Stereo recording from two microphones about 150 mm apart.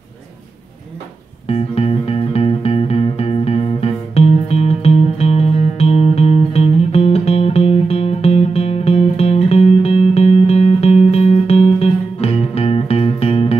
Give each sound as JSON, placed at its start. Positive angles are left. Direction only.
{"t": 1.5, "sound": "music", "side_deg": 40}